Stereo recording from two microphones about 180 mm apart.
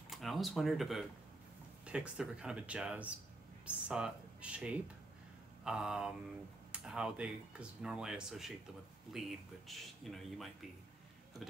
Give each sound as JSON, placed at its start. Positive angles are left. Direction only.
{"t": 0.1, "sound": "speech", "side_deg": 0}